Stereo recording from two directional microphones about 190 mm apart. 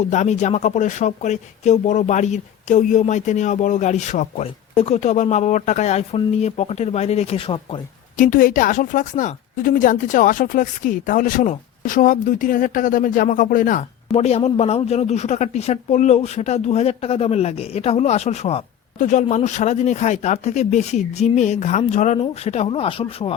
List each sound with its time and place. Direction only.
0.0 s a woman's voice: 40° left (ahead or behind)
8.1 s a woman's voice: 45° left (ahead or behind); by 23.3 s 30° left (ahead or behind)